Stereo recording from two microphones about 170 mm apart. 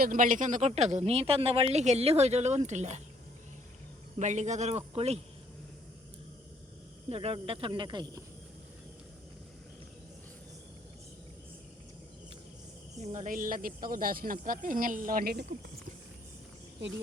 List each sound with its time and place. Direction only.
0.0 s speech: 50° right (ahead or behind)
4.2 s a man's voice: 45° right (ahead or behind)
7.1 s speech: 35° right (ahead or behind)
13.0 s speech: 45° right (ahead or behind); by 15.4 s 65° right (ahead or behind)